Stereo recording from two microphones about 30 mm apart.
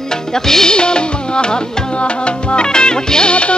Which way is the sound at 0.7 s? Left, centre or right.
Left.